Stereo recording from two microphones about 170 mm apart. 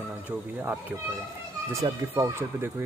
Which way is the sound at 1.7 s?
15° right (ahead or behind).